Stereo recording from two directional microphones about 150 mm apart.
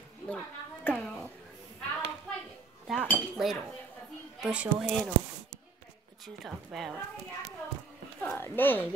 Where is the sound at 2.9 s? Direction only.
Centre (ahead or behind).